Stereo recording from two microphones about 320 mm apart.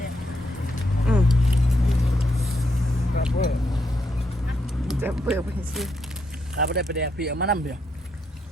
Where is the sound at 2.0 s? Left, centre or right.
Centre.